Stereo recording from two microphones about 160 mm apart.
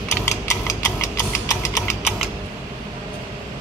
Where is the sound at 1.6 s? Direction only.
20° left (ahead or behind).